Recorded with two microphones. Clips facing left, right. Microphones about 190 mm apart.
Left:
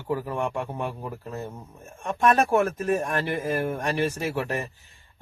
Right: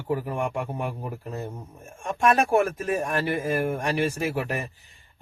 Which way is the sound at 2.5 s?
10° right (ahead or behind).